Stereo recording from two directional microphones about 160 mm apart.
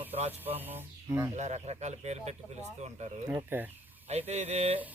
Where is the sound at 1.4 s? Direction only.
45° right (ahead or behind).